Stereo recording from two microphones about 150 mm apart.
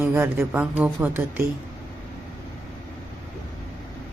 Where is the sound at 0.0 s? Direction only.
15° right (ahead or behind).